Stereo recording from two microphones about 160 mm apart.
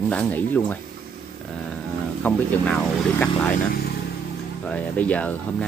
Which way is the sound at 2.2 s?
10° left (ahead or behind).